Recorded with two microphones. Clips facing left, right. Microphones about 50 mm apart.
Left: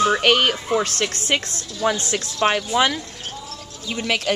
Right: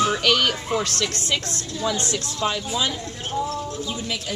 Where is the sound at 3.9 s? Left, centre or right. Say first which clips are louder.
Left 6 dB; left.